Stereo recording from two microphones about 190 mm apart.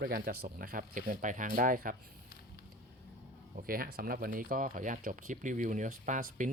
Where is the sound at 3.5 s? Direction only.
50° right (ahead or behind).